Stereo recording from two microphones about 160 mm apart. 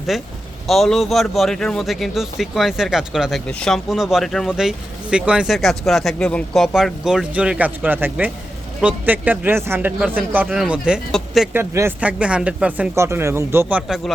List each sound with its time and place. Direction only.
0.1 s speech: centre (ahead or behind)
11.5 s speech: 15° right (ahead or behind)